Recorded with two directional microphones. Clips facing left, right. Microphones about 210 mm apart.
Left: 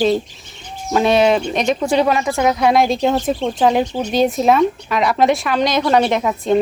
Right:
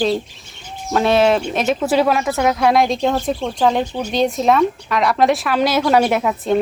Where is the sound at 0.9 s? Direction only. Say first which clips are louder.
Left 1 dB; centre (ahead or behind).